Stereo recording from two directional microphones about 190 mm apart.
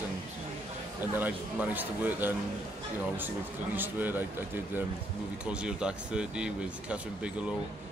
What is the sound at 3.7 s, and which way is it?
Speech, 10° right (ahead or behind).